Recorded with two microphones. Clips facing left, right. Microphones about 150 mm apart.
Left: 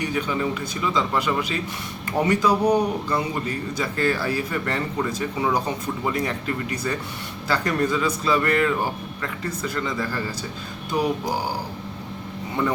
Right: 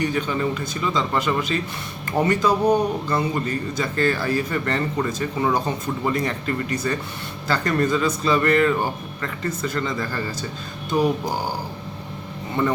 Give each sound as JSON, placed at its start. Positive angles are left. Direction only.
{"t": 0.0, "sound": "a man's voice", "side_deg": 5}